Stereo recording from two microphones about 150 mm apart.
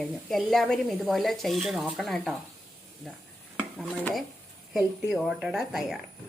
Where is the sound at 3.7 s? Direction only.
Centre (ahead or behind).